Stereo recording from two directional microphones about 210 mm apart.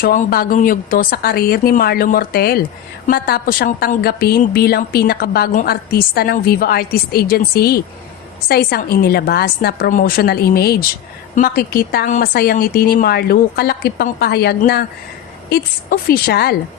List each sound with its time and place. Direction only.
0.0 s a woman's voice: 40° left (ahead or behind)